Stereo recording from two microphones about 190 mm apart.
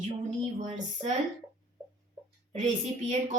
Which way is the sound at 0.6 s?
35° right (ahead or behind).